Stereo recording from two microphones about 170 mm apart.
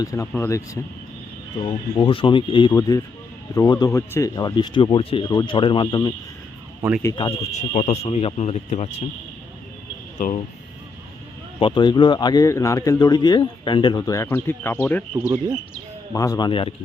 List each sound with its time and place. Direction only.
0.0 s speech: 20° left (ahead or behind)
1.6 s speech: 30° left (ahead or behind)
7.3 s speech: 40° left (ahead or behind)
10.2 s speech: 45° left (ahead or behind)
11.6 s speech: 25° left (ahead or behind); by 15.0 s 10° left (ahead or behind)
15.1 s speech: 15° right (ahead or behind)
16.1 s speech: 20° left (ahead or behind)